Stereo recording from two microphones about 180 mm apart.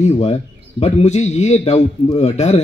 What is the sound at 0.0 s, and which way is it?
A man's voice, 35° left (ahead or behind).